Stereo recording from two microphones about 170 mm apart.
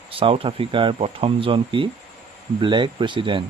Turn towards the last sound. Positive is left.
turn(degrees=-30)  # may be behind; listen again after turning